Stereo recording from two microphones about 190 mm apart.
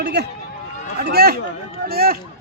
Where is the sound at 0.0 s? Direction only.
60° right (ahead or behind).